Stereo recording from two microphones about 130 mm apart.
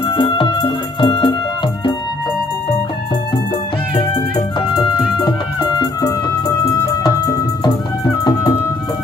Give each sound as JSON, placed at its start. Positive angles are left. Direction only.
{"t": 0.0, "sound": "music", "side_deg": 40}
{"t": 3.9, "sound": "music", "side_deg": 35}